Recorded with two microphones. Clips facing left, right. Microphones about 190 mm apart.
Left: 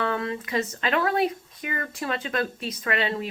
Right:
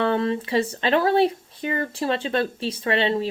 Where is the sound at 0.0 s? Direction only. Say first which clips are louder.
Right 6 dB; 30° right (ahead or behind).